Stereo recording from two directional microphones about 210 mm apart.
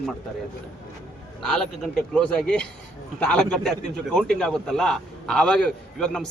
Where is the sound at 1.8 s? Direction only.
Centre (ahead or behind).